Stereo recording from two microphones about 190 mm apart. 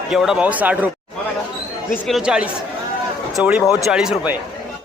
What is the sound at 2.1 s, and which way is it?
Speech, 5° right (ahead or behind).